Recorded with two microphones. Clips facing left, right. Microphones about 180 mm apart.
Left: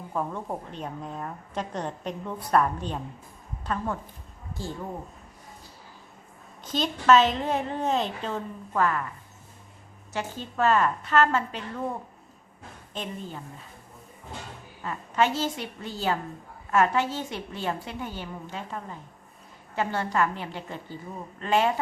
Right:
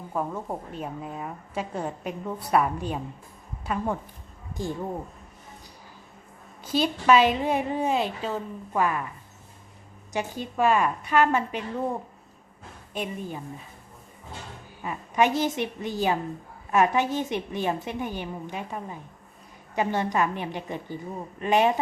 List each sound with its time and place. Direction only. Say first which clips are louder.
0.1 s a woman's voice: right 1 dB; 5° right (ahead or behind)
6.7 s a woman's voice: even; 10° right (ahead or behind)
10.1 s a woman's voice: right 3 dB; 15° right (ahead or behind)
12.9 s a woman's voice: right 3 dB; 10° right (ahead or behind)
14.8 s a woman's voice: right 2 dB; 15° right (ahead or behind)